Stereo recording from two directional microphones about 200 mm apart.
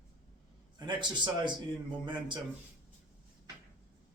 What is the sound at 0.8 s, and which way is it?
A man's voice, 20° right (ahead or behind).